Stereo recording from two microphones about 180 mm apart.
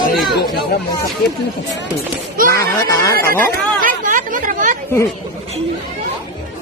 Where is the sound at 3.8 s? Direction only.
45° right (ahead or behind).